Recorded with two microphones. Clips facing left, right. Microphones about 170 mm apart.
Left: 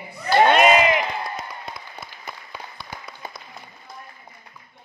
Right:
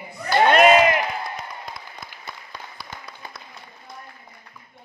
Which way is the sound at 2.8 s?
20° left (ahead or behind).